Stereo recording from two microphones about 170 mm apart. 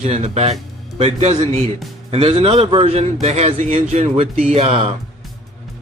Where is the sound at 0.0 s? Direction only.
45° right (ahead or behind).